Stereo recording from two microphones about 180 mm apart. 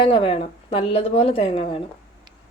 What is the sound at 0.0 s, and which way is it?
A woman's voice, 30° left (ahead or behind).